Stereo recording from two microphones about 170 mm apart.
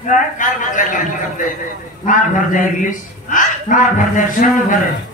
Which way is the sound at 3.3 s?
50° left (ahead or behind).